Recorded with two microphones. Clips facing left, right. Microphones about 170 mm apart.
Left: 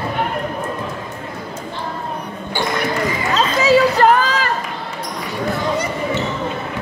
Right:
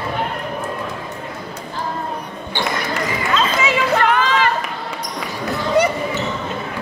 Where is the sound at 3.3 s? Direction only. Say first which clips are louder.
Left 6 dB; 35° left (ahead or behind).